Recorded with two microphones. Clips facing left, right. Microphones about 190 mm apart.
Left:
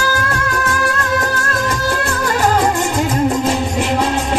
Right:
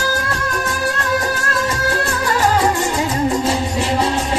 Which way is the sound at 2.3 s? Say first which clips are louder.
Left 1 dB; 50° left (ahead or behind).